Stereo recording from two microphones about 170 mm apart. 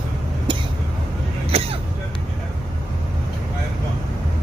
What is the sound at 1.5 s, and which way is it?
Throat clearing, 35° right (ahead or behind).